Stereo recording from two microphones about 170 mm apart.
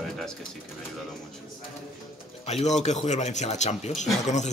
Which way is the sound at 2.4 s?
40° left (ahead or behind).